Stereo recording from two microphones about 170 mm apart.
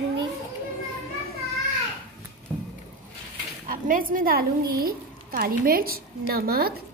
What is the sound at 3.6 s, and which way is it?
A woman's voice, 55° right (ahead or behind).